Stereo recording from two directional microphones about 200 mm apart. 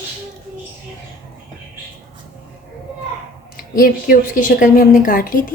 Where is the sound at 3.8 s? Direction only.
45° left (ahead or behind).